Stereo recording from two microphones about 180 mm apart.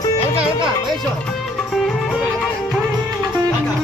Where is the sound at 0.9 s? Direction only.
Centre (ahead or behind).